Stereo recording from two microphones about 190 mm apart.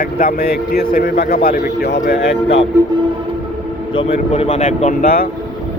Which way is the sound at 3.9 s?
30° left (ahead or behind).